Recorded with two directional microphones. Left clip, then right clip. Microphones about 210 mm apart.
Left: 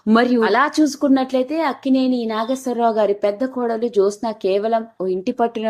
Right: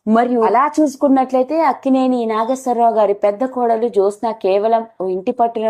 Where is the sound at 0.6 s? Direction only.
15° left (ahead or behind).